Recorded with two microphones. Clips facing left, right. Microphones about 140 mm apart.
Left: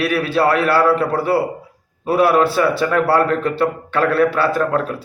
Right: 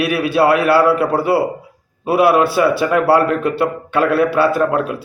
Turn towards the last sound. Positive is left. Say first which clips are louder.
# right 2 dB
turn(degrees=-15)  # may be behind; listen again after turning